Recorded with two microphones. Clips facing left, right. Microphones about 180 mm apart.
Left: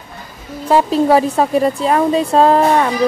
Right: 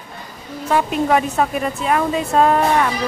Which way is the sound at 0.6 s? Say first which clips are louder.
Left 5 dB; 30° left (ahead or behind).